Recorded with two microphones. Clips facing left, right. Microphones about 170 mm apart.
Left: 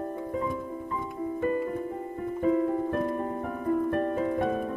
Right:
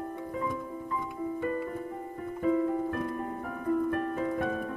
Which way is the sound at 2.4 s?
30° left (ahead or behind).